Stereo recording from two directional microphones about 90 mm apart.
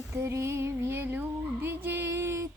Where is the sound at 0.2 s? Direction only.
30° right (ahead or behind).